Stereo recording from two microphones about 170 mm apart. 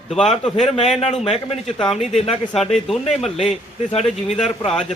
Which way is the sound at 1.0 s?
35° left (ahead or behind).